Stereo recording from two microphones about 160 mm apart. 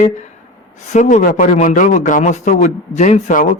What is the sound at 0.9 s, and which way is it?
Speech, 50° left (ahead or behind).